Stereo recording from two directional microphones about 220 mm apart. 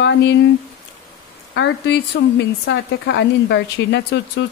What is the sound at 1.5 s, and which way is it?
A woman's voice, 50° left (ahead or behind).